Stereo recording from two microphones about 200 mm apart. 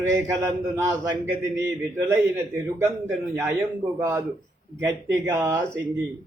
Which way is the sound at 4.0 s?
15° right (ahead or behind).